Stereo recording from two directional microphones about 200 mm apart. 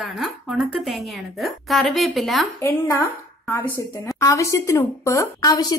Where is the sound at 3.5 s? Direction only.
10° left (ahead or behind).